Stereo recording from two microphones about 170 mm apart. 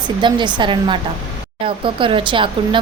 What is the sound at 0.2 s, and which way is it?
Speech, 25° right (ahead or behind).